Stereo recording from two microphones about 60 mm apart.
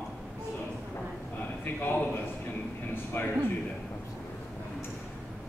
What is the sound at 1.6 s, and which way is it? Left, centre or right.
A man's voice, left.